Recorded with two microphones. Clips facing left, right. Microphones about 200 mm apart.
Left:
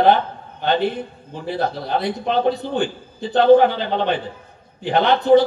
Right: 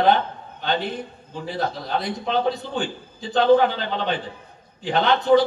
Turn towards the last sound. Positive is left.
turn(degrees=55)  # may be behind; listen again after turning